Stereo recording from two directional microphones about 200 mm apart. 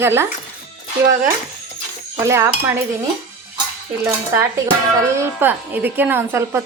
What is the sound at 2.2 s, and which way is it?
Speech, 15° right (ahead or behind).